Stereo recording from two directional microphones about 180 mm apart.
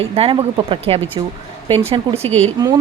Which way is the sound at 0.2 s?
25° right (ahead or behind).